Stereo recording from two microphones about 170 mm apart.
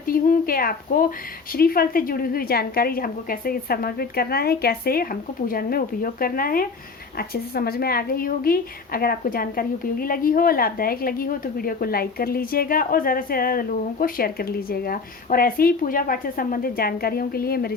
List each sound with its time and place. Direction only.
0.0 s a woman's voice: 55° left (ahead or behind)